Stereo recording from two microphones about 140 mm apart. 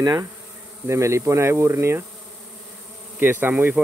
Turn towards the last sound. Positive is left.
turn(degrees=-15)  # may be behind; listen again after turning